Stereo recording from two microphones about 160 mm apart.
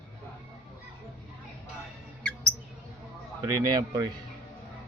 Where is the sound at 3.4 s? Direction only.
25° right (ahead or behind).